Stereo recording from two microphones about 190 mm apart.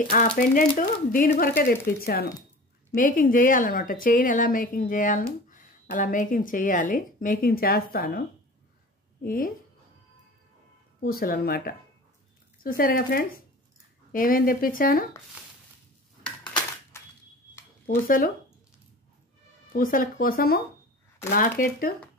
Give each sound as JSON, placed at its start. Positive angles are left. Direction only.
{"t": 0.4, "sound": "a woman's voice", "side_deg": 45}
{"t": 9.2, "sound": "a woman's voice", "side_deg": 50}
{"t": 11.0, "sound": "a woman's voice", "side_deg": 50}
{"t": 17.8, "sound": "a woman's voice", "side_deg": 50}
{"t": 19.7, "sound": "a woman's voice", "side_deg": 45}